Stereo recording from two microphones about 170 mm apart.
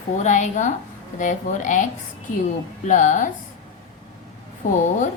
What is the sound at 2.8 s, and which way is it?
Speech, 50° left (ahead or behind).